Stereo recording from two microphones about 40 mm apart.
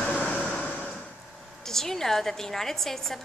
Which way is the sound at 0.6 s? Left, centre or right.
Left.